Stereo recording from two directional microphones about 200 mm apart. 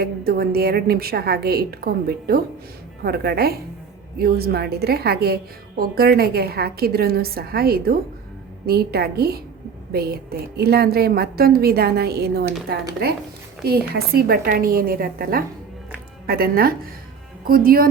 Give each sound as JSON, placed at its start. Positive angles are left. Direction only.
{"t": 0.0, "sound": "a woman's voice", "side_deg": -50}